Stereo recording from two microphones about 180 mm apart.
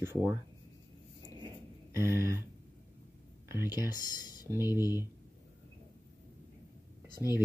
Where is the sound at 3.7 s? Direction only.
20° left (ahead or behind).